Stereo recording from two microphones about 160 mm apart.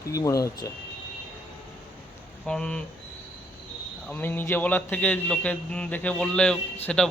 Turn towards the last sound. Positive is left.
turn(degrees=5)  # may be behind; listen again after turning